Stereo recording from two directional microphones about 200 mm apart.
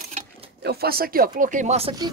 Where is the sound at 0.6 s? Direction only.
50° right (ahead or behind); by 1.9 s 35° right (ahead or behind).